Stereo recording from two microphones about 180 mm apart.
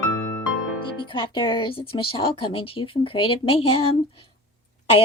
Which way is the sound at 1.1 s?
25° left (ahead or behind).